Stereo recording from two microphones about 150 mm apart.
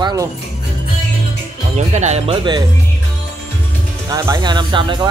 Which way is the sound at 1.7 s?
50° right (ahead or behind).